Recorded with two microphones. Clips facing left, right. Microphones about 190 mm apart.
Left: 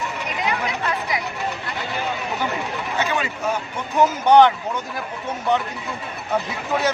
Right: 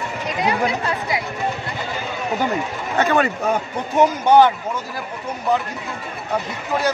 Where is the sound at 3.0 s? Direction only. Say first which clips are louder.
Right 7 dB; 55° right (ahead or behind).